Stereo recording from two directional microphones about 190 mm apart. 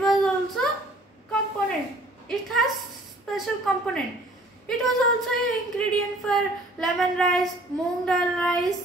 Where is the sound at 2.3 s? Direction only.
Centre (ahead or behind).